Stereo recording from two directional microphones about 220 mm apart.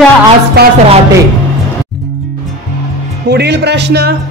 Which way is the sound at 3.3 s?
50° right (ahead or behind).